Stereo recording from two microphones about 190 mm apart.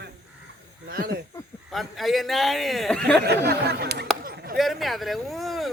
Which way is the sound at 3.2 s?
60° right (ahead or behind).